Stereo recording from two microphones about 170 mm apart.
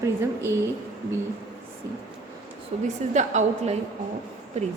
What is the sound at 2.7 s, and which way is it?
A woman's voice, 35° right (ahead or behind).